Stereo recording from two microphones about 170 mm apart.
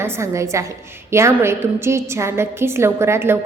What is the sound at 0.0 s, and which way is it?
A woman's voice, 15° right (ahead or behind).